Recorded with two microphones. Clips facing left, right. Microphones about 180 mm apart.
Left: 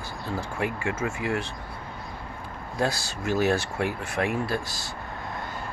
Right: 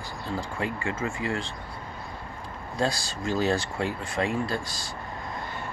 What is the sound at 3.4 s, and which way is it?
Speech, 70° left (ahead or behind).